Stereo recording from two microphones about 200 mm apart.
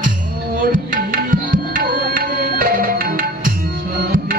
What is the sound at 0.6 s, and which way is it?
Tabla, 45° right (ahead or behind).